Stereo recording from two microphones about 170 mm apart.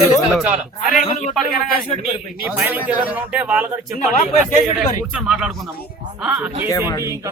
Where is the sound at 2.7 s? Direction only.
10° right (ahead or behind).